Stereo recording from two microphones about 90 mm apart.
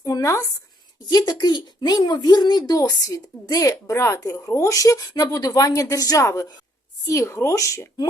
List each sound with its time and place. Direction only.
0.0 s speech: 40° left (ahead or behind)
1.1 s speech: 50° left (ahead or behind); by 8.0 s 35° left (ahead or behind)